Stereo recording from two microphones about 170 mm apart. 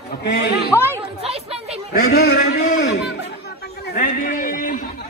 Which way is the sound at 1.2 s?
35° right (ahead or behind).